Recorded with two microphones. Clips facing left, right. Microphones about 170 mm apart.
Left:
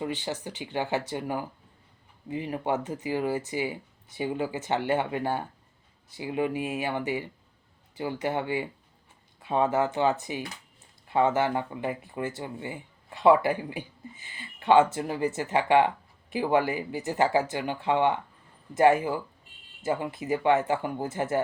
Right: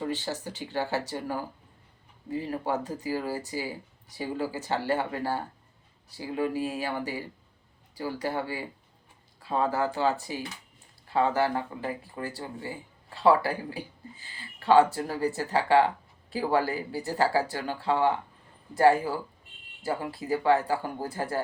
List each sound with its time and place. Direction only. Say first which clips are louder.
0.0 s speech: even; 20° left (ahead or behind)